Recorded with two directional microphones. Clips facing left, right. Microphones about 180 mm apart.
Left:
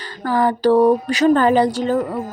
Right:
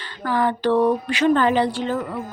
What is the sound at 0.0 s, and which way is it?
A woman's voice, 40° left (ahead or behind).